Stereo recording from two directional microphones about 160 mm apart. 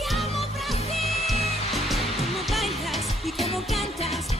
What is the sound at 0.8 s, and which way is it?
Music, 40° left (ahead or behind).